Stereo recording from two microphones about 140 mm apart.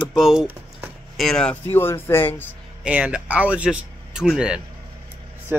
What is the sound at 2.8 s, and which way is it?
Speech, 10° right (ahead or behind).